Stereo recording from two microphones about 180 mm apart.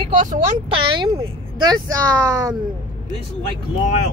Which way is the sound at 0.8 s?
30° right (ahead or behind).